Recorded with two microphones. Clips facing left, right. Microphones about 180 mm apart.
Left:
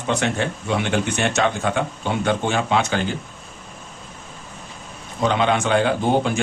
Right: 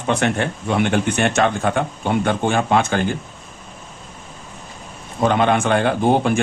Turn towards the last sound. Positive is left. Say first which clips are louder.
# right 3 dB
turn(degrees=-50)  # may be behind; listen again after turning